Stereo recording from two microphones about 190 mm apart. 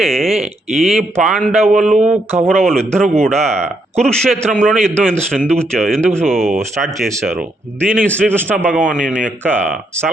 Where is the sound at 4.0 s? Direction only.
5° left (ahead or behind).